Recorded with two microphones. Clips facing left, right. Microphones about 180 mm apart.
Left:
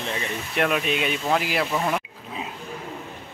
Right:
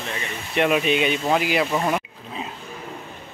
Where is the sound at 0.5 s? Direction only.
5° right (ahead or behind).